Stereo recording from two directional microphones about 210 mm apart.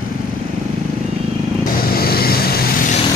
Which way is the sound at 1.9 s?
45° left (ahead or behind).